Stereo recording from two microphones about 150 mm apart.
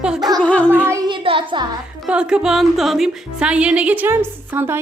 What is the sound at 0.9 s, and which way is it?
Speech, 25° right (ahead or behind).